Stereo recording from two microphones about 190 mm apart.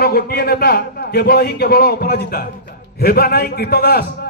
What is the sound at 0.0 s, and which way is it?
A man's voice, 55° left (ahead or behind).